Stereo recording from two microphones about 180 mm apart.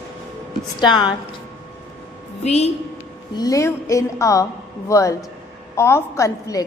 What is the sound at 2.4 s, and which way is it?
Speech, 35° left (ahead or behind).